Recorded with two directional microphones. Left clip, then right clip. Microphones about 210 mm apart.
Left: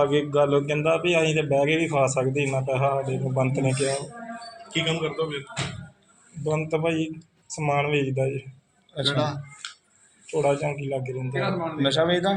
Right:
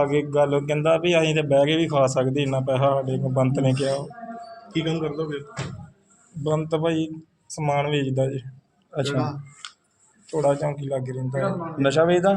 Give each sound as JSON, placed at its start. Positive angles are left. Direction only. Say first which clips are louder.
{"t": 0.0, "sound": "a man's voice", "louder": "right 1 dB", "side_deg": -10}
{"t": 4.7, "sound": "a man's voice", "louder": "even", "side_deg": -40}
{"t": 6.4, "sound": "a man's voice", "louder": "right 2 dB", "side_deg": -20}
{"t": 10.3, "sound": "a man's voice", "louder": "right 1 dB", "side_deg": -15}
{"t": 11.8, "sound": "a man's voice", "louder": "right 4 dB", "side_deg": -45}